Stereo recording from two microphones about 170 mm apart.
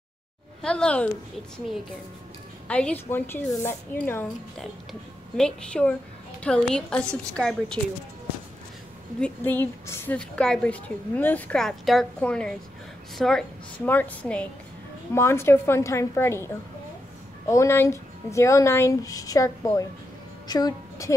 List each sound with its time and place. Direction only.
0.6 s a woman's voice: 5° left (ahead or behind)
2.7 s a woman's voice: 10° left (ahead or behind)
9.2 s a woman's voice: 10° left (ahead or behind)
17.5 s a woman's voice: 15° left (ahead or behind)